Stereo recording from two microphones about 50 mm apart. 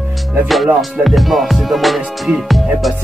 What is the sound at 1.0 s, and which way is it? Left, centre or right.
Music, centre.